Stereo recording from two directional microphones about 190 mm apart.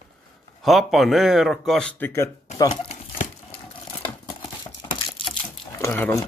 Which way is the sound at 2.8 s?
35° left (ahead or behind).